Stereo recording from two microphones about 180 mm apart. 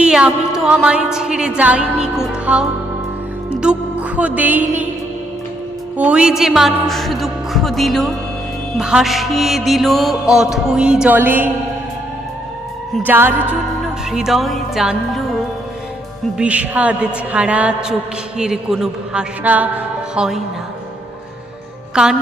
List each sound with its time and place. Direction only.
0.0 s music: 5° right (ahead or behind)
6.0 s music: 5° right (ahead or behind)
13.1 s music: 10° right (ahead or behind)
22.0 s music: 5° right (ahead or behind)